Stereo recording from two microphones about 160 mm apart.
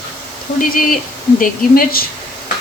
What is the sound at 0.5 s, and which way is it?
A woman's voice, 60° left (ahead or behind).